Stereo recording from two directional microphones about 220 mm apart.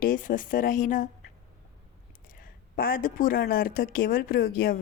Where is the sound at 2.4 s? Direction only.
40° left (ahead or behind).